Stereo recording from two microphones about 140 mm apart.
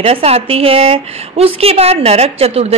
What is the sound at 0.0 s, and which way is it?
A woman's voice, 45° right (ahead or behind).